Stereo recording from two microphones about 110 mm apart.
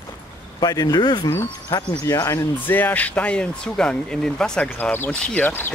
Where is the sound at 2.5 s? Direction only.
15° left (ahead or behind).